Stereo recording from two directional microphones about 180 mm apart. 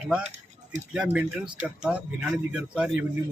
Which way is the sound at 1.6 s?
5° right (ahead or behind).